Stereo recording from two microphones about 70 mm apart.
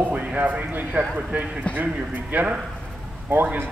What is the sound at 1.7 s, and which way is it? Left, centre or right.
A man's voice, right.